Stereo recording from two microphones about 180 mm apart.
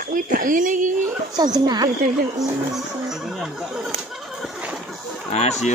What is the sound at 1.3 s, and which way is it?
Speech, 25° right (ahead or behind).